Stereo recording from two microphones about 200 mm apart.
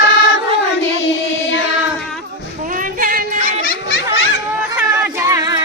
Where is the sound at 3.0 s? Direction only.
45° right (ahead or behind).